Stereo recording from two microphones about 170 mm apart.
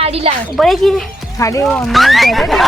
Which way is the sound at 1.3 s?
20° left (ahead or behind).